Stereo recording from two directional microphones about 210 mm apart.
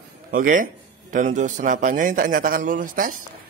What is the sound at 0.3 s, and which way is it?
A man's voice, 40° right (ahead or behind).